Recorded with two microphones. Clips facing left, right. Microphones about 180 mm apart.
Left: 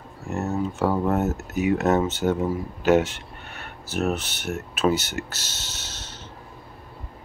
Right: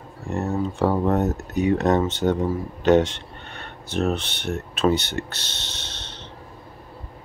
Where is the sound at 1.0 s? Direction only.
5° left (ahead or behind).